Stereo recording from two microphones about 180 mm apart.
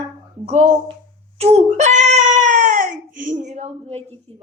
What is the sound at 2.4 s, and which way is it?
Baby cry, 45° right (ahead or behind).